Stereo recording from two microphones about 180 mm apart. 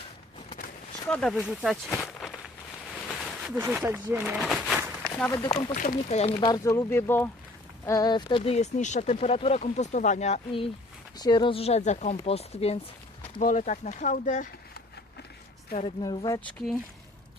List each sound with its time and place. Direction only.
1.0 s speech: 5° left (ahead or behind)
3.4 s speech: 10° right (ahead or behind)
5.3 s speech: 20° left (ahead or behind)
5.7 s speech: 45° left (ahead or behind)
11.2 s speech: 25° left (ahead or behind); by 14.5 s 45° left (ahead or behind)
15.7 s speech: 30° left (ahead or behind)
16.5 s speech: 5° left (ahead or behind)